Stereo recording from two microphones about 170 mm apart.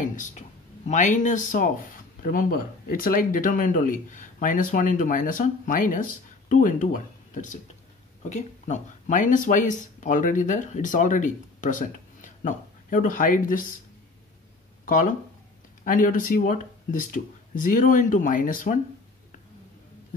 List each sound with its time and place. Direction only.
0.0 s speech: 50° left (ahead or behind)
15.8 s speech: 50° left (ahead or behind)